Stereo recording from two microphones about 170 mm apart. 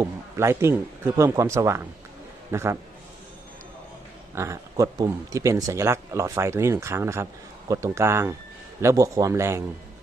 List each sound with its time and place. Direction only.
0.0 s speech: 15° right (ahead or behind)
4.4 s speech: 15° right (ahead or behind)